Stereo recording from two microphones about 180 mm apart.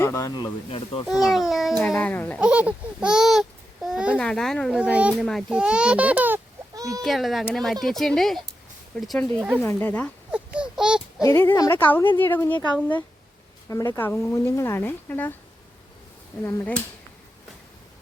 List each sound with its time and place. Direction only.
0.0 s speech: 15° left (ahead or behind)
1.3 s speech: centre (ahead or behind)
2.4 s a child's voice: 5° right (ahead or behind)
7.0 s speech: centre (ahead or behind)
9.6 s speech: 10° left (ahead or behind)
10.3 s a sound: 5° right (ahead or behind)
11.2 s speech: 15° left (ahead or behind)
16.4 s speech: 15° left (ahead or behind)